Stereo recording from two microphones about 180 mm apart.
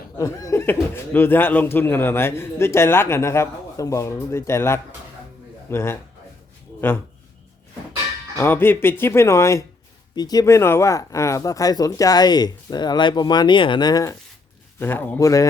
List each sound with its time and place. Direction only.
0.2 s speech: 15° left (ahead or behind)
8.4 s speech: 10° left (ahead or behind)